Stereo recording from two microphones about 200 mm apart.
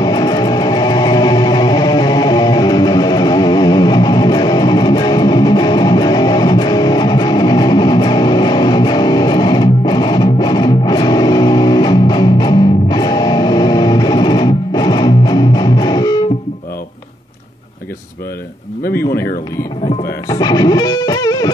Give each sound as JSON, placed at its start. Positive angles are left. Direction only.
{"t": 0.0, "sound": "music", "side_deg": 20}
{"t": 18.9, "sound": "a sound", "side_deg": 10}
{"t": 20.2, "sound": "music", "side_deg": 20}